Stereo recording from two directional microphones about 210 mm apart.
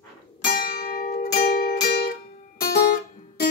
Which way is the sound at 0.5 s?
45° left (ahead or behind).